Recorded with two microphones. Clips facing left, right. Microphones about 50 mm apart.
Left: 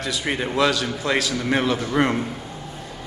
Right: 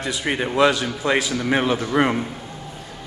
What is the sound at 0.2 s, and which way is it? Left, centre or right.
A man's voice, centre.